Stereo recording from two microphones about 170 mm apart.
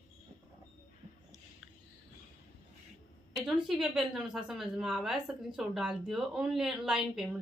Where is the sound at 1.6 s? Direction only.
Centre (ahead or behind).